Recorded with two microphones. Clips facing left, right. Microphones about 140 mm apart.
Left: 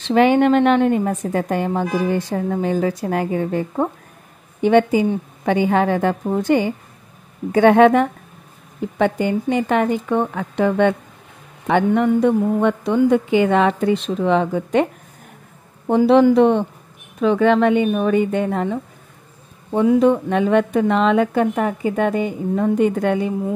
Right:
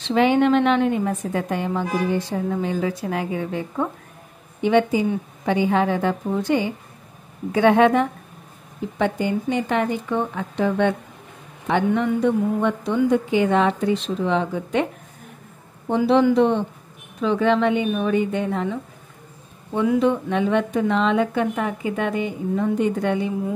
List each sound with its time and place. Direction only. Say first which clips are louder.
0.1 s a woman's voice: left 3 dB; 50° left (ahead or behind)
15.9 s a woman's voice: left 4 dB; 50° left (ahead or behind)
19.7 s speech: left 5 dB; 30° left (ahead or behind)
20.0 s a woman's voice: left 4 dB; 45° left (ahead or behind)